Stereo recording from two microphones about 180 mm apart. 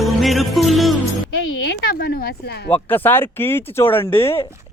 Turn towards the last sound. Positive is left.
turn(degrees=15)  # may be behind; listen again after turning